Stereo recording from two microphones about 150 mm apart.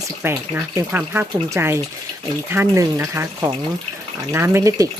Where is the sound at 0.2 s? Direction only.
10° right (ahead or behind).